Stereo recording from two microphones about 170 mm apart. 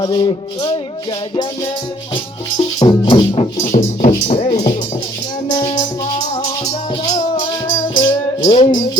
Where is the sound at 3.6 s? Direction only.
45° left (ahead or behind).